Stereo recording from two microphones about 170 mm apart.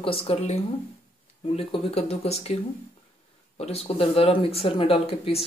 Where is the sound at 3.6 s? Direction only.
35° left (ahead or behind).